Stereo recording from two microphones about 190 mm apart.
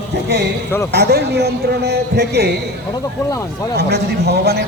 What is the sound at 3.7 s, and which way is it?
Speech, 60° right (ahead or behind).